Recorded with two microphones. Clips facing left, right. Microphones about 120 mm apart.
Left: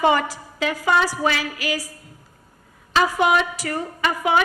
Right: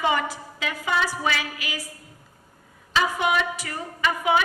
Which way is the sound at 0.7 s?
40° left (ahead or behind).